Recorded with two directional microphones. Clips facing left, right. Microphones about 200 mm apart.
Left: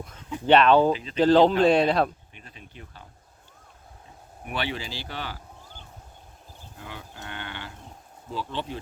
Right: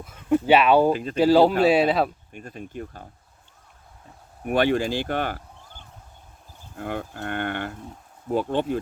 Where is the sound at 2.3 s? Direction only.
50° right (ahead or behind).